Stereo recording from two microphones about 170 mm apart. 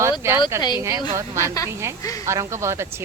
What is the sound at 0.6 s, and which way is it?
Speech, 25° left (ahead or behind).